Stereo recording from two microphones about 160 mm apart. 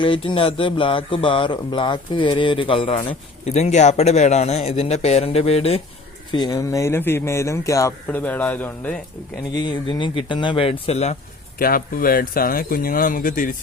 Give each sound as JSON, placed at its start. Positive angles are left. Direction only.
{"t": 0.0, "sound": "speech", "side_deg": 30}
{"t": 6.3, "sound": "speech", "side_deg": 25}
{"t": 9.6, "sound": "speech", "side_deg": 30}
{"t": 11.6, "sound": "speech", "side_deg": 65}